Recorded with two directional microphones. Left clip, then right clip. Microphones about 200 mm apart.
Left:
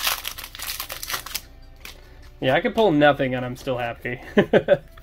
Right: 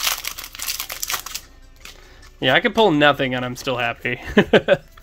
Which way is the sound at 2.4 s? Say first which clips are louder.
Right 4 dB; 30° right (ahead or behind).